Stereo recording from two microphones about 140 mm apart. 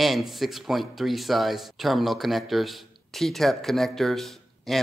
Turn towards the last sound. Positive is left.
turn(degrees=0)  # may be behind; listen again after turning